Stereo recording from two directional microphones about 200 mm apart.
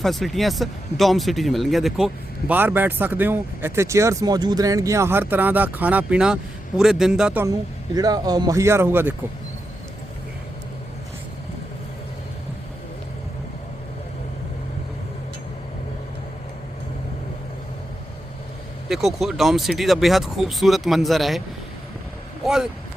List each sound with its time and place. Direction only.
0.0 s speech: centre (ahead or behind)
7.9 s speech: 20° right (ahead or behind)
18.9 s speech: centre (ahead or behind)
22.4 s speech: 5° right (ahead or behind)